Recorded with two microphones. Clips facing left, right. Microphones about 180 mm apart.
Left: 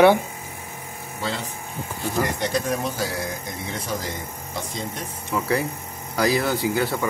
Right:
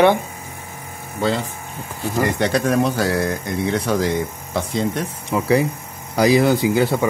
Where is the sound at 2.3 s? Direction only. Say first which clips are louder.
Right 7 dB; 70° right (ahead or behind).